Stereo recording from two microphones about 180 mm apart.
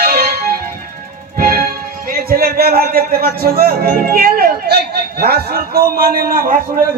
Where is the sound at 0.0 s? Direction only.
60° right (ahead or behind).